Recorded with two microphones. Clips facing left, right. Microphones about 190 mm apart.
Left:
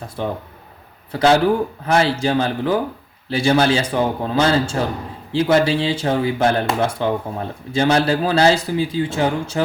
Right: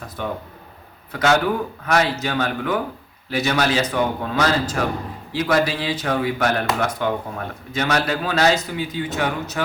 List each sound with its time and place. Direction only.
0.2 s speech: 30° left (ahead or behind)